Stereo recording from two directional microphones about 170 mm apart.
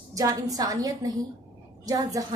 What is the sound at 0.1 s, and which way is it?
A woman's voice, 20° right (ahead or behind).